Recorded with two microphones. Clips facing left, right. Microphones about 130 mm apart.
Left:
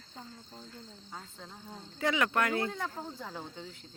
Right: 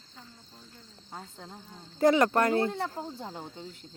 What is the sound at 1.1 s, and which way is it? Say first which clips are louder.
Speech: right 4 dB; 40° right (ahead or behind).